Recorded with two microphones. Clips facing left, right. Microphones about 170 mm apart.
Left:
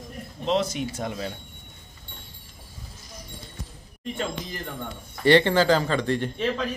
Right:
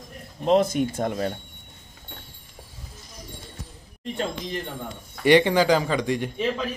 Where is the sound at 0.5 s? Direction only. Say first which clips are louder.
Right 5 dB; 50° right (ahead or behind).